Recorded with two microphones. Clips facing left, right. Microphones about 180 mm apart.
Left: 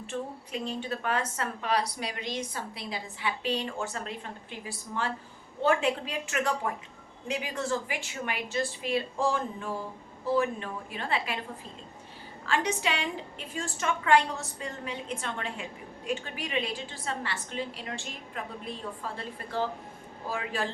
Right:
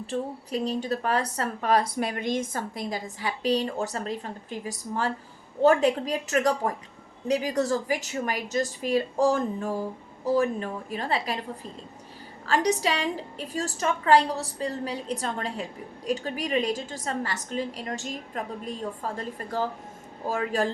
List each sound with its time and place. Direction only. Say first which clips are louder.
0.1 s a woman's voice: right 5 dB; 40° right (ahead or behind)
12.5 s a woman's voice: right 5 dB; 40° right (ahead or behind)